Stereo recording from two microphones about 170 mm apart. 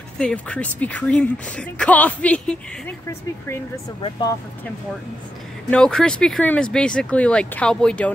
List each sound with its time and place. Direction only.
0.2 s speech: 5° left (ahead or behind)
4.0 s speech: 25° left (ahead or behind)
5.7 s speech: 5° left (ahead or behind)